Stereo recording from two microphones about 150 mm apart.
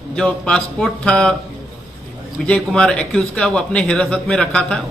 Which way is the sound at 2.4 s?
5° left (ahead or behind).